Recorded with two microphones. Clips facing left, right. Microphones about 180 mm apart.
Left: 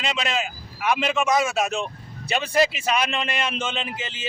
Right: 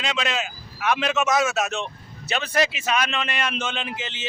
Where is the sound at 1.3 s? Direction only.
10° left (ahead or behind).